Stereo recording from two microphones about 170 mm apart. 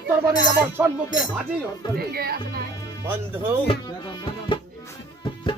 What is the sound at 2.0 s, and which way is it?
Speech, 65° right (ahead or behind).